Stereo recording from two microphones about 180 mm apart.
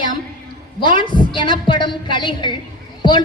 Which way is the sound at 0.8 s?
25° left (ahead or behind).